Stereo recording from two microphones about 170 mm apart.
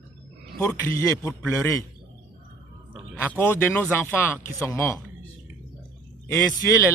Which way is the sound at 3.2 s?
10° left (ahead or behind).